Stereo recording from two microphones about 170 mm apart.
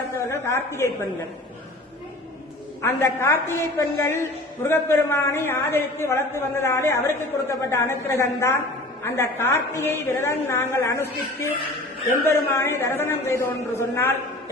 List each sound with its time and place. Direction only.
0.3 s a woman's voice: 15° left (ahead or behind)
2.8 s a woman's voice: 15° left (ahead or behind)